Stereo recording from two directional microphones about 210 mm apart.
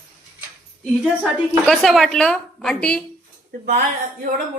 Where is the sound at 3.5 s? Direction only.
35° right (ahead or behind).